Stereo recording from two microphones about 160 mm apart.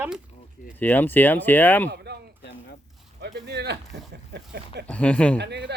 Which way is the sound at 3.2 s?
90° right.